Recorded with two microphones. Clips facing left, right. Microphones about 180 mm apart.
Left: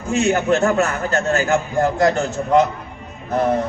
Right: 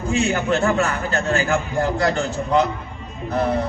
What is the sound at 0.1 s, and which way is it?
A man's voice, 45° left (ahead or behind).